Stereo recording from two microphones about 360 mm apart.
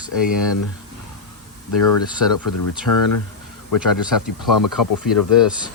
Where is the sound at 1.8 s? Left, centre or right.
Left.